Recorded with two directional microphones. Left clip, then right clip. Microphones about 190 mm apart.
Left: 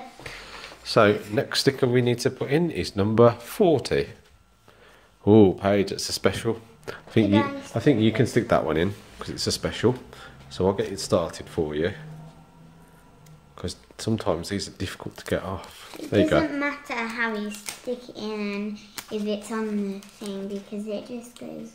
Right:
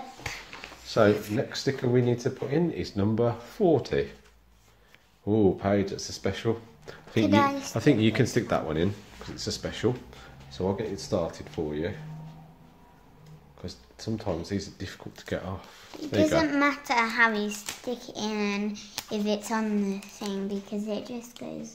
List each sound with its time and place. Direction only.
0.2 s a sound: 45° right (ahead or behind)
0.8 s speech: 30° left (ahead or behind)
5.2 s speech: 40° left (ahead or behind)
7.2 s a woman's voice: 50° right (ahead or behind)
7.7 s speech: 5° left (ahead or behind); by 11.9 s 35° left (ahead or behind)
13.6 s speech: 35° left (ahead or behind)
16.4 s a woman's voice: 55° right (ahead or behind)